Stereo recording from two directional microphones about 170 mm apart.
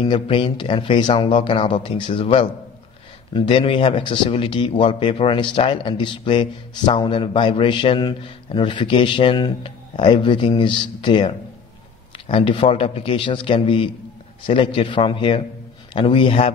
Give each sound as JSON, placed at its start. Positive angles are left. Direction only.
{"t": 0.0, "sound": "speech", "side_deg": 30}